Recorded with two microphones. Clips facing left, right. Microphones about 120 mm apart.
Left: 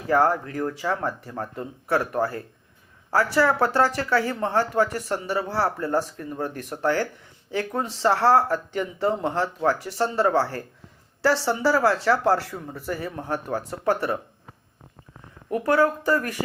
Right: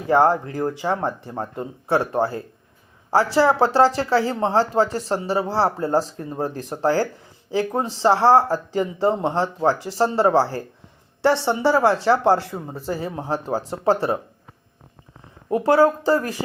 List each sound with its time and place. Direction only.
0.1 s speech: 25° right (ahead or behind)
15.4 s speech: 25° right (ahead or behind)